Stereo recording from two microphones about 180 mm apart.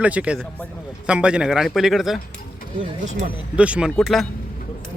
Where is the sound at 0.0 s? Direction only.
5° right (ahead or behind).